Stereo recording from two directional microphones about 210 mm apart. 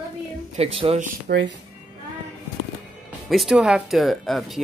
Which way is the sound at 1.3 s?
45° right (ahead or behind).